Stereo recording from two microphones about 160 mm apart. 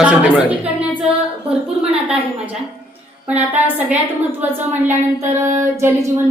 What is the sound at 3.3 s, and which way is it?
Speech, 10° right (ahead or behind).